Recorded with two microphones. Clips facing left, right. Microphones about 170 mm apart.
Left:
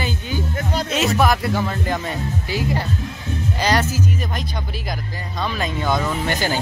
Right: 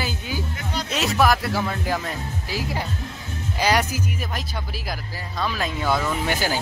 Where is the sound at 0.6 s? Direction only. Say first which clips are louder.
Left 6 dB; 45° left (ahead or behind).